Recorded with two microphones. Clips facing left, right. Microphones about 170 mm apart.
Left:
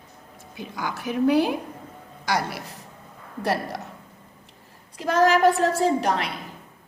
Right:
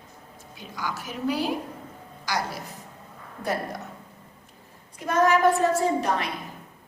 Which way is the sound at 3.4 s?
80° left.